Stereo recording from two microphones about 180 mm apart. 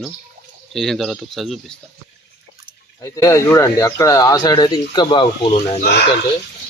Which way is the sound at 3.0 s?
15° left (ahead or behind).